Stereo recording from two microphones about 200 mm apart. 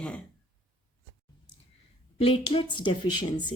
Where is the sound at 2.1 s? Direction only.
30° left (ahead or behind).